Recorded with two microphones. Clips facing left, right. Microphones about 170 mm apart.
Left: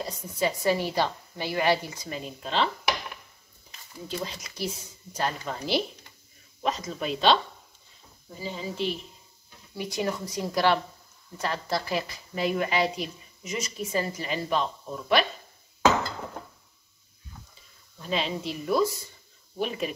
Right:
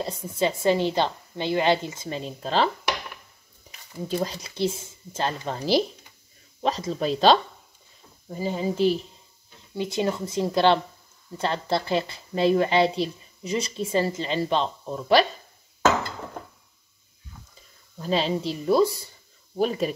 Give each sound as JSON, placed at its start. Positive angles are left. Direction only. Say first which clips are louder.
{"t": 0.0, "sound": "speech", "louder": "right 3 dB", "side_deg": -25}
{"t": 4.4, "sound": "speech", "louder": "right 7 dB", "side_deg": -25}
{"t": 8.3, "sound": "speech", "louder": "right 8 dB", "side_deg": -50}
{"t": 9.8, "sound": "speech", "louder": "right 4 dB", "side_deg": -25}
{"t": 17.9, "sound": "speech", "louder": "right 5 dB", "side_deg": -35}